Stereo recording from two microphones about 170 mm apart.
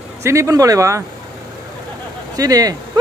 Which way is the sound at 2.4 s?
20° right (ahead or behind).